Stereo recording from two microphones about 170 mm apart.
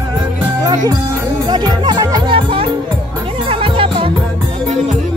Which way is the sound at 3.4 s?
35° right (ahead or behind).